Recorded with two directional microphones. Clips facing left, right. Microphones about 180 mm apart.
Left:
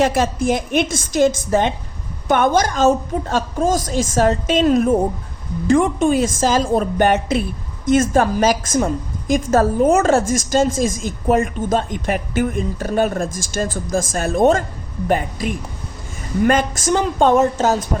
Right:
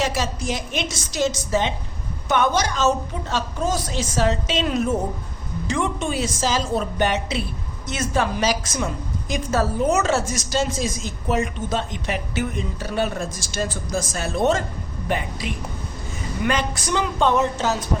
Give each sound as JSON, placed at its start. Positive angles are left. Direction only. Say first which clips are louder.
{"t": 0.0, "sound": "a woman's voice", "louder": "left 7 dB", "side_deg": 55}